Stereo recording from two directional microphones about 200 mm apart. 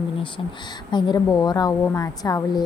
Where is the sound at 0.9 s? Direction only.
20° left (ahead or behind).